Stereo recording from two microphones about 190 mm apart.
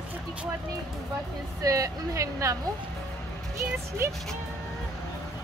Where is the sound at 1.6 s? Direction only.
20° right (ahead or behind).